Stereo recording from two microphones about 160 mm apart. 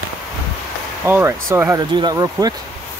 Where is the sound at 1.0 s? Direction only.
15° right (ahead or behind).